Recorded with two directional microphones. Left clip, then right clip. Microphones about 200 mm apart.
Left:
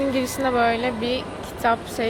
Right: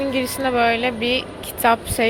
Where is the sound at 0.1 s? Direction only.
5° right (ahead or behind).